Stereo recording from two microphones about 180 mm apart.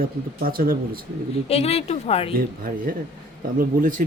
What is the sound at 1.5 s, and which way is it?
Speech, 35° left (ahead or behind).